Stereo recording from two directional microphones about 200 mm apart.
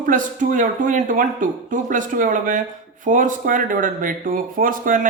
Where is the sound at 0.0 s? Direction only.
40° right (ahead or behind).